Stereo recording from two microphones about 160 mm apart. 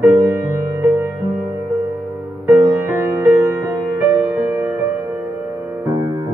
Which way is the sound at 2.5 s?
15° right (ahead or behind).